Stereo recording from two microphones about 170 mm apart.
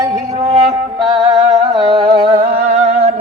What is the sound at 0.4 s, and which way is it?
Music, 20° right (ahead or behind).